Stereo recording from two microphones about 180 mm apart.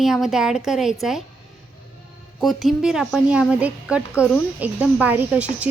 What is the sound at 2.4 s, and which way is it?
A woman's voice, centre (ahead or behind).